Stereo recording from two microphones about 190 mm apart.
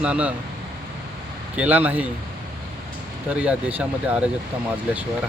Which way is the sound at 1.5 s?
5° right (ahead or behind).